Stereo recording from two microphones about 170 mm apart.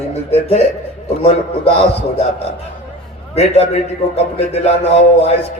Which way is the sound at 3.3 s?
35° left (ahead or behind).